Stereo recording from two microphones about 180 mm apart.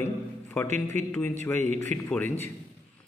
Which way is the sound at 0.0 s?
10° left (ahead or behind).